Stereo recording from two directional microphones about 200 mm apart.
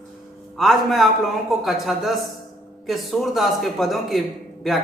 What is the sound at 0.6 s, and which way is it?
A man's voice, centre (ahead or behind).